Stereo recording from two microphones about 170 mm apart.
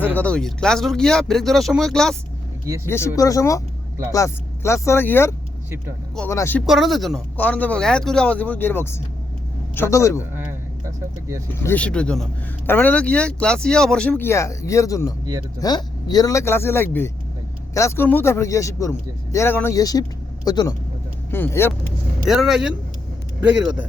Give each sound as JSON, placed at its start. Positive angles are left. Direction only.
{"t": 0.1, "sound": "speech", "side_deg": 10}
{"t": 2.6, "sound": "speech", "side_deg": -15}
{"t": 3.2, "sound": "speech", "side_deg": 20}
{"t": 6.7, "sound": "speech", "side_deg": 0}
{"t": 10.8, "sound": "speech", "side_deg": -20}
{"t": 11.6, "sound": "speech", "side_deg": 10}
{"t": 22.3, "sound": "speech", "side_deg": 0}